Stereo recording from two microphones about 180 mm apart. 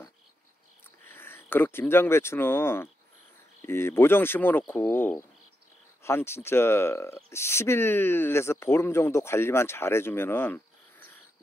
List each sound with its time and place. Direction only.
1.1 s speech: 10° left (ahead or behind)